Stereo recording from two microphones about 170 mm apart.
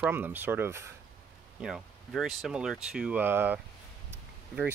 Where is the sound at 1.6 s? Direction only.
5° right (ahead or behind).